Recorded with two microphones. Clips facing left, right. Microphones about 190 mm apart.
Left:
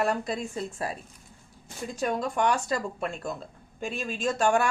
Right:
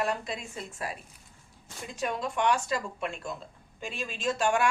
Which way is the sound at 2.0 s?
40° left (ahead or behind).